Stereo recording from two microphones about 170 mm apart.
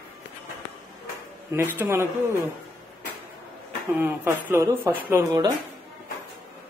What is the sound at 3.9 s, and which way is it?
Speech, 10° right (ahead or behind).